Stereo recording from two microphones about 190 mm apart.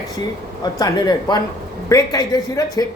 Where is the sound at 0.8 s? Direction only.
20° left (ahead or behind).